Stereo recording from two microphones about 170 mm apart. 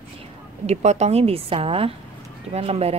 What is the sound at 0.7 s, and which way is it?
Speech, 40° right (ahead or behind).